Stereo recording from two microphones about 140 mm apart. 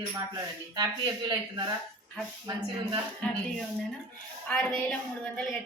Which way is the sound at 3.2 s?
5° left (ahead or behind).